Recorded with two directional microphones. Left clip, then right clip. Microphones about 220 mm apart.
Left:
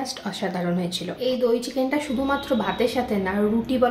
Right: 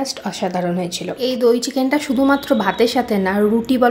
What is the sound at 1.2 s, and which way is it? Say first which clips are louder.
Speech: right 6 dB; 50° right (ahead or behind).